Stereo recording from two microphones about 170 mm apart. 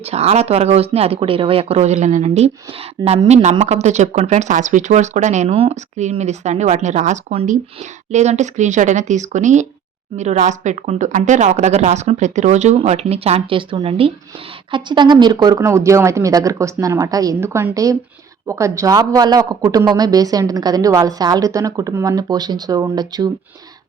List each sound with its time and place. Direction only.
0.0 s speech: 40° right (ahead or behind)